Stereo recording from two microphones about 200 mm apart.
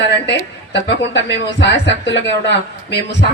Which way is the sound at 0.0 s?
60° left (ahead or behind).